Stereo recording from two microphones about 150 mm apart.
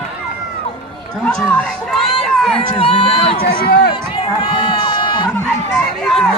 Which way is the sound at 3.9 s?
35° left (ahead or behind).